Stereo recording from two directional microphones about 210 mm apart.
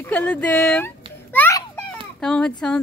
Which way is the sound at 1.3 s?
10° left (ahead or behind).